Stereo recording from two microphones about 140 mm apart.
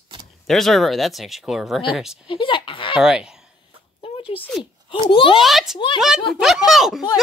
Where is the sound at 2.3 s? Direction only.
35° left (ahead or behind).